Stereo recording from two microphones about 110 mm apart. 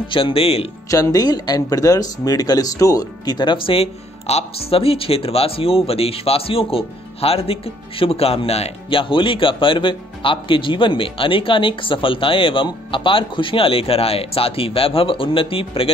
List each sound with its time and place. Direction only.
0.1 s speech: 55° left (ahead or behind)
0.8 s speech: 30° left (ahead or behind); by 15.9 s 55° left (ahead or behind)